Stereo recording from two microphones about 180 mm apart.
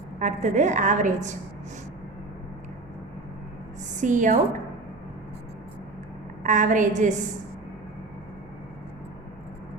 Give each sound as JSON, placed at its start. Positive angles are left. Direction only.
{"t": 0.2, "sound": "a woman's voice", "side_deg": -45}
{"t": 3.9, "sound": "a woman's voice", "side_deg": -45}
{"t": 6.4, "sound": "a woman's voice", "side_deg": -45}